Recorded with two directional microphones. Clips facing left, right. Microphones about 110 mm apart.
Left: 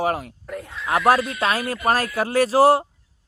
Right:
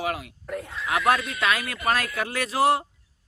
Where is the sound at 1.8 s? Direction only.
40° left (ahead or behind).